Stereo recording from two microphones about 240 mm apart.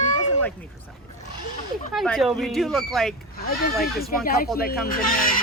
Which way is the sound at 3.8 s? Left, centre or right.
Left.